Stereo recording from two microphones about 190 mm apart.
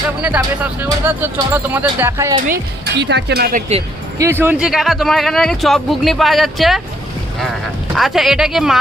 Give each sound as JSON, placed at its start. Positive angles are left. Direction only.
{"t": 0.2, "sound": "speech", "side_deg": -5}
{"t": 2.5, "sound": "speech", "side_deg": -60}
{"t": 4.2, "sound": "speech", "side_deg": -10}
{"t": 7.9, "sound": "speech", "side_deg": 0}